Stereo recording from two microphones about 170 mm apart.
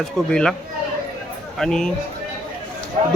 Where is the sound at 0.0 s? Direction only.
5° left (ahead or behind).